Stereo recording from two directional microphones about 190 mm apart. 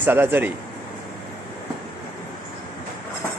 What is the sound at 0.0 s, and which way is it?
Speech, 10° right (ahead or behind).